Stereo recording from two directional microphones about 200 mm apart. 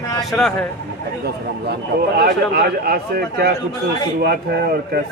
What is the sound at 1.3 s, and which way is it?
A man's voice, 55° right (ahead or behind).